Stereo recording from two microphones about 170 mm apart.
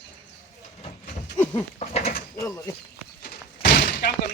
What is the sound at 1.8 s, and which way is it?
Goat, 40° left (ahead or behind).